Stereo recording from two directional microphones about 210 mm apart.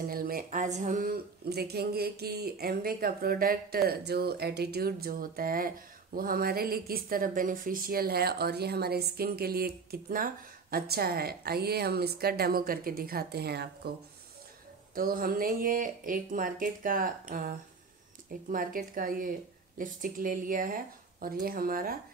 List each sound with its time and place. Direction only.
0.0 s a woman's voice: 45° right (ahead or behind)
15.0 s speech: 45° right (ahead or behind)